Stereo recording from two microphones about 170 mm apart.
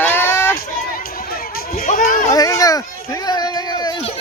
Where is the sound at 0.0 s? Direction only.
10° left (ahead or behind).